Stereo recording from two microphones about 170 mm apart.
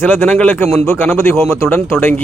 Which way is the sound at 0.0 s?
10° left (ahead or behind).